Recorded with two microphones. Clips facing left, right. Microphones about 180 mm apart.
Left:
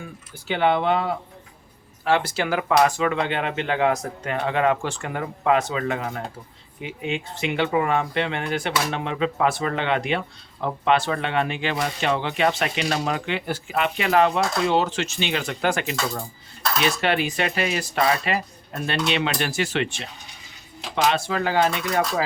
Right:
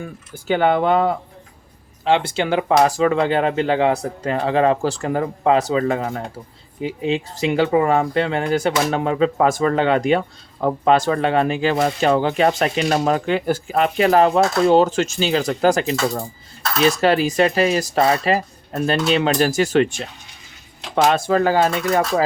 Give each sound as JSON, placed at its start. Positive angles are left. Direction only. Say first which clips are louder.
{"t": 0.0, "sound": "speech", "louder": "right 6 dB", "side_deg": -45}
{"t": 2.0, "sound": "speech", "louder": "right 4 dB", "side_deg": -25}